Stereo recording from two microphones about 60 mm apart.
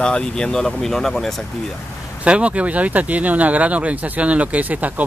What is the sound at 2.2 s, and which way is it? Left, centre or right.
Speech, right.